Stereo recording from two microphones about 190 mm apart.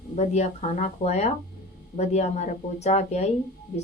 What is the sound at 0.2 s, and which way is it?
A woman's voice, 35° left (ahead or behind).